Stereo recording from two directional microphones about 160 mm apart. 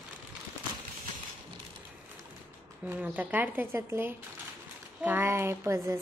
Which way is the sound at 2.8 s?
10° right (ahead or behind).